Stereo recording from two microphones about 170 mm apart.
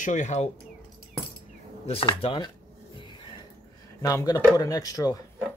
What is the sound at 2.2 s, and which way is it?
Speech, 30° left (ahead or behind).